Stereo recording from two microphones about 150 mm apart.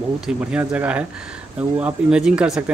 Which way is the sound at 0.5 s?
10° right (ahead or behind).